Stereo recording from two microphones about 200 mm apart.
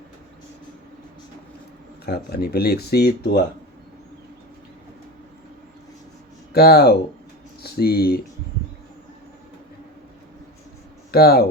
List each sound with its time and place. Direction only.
2.0 s speech: 55° left (ahead or behind)
6.5 s speech: 50° left (ahead or behind)
11.1 s speech: 50° left (ahead or behind)